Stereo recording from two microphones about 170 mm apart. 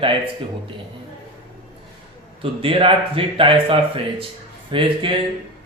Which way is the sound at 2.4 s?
30° right (ahead or behind).